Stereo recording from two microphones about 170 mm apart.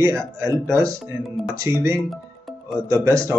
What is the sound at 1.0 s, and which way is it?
Speech, centre (ahead or behind).